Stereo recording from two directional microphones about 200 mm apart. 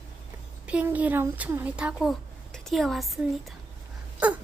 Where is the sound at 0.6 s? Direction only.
5° right (ahead or behind).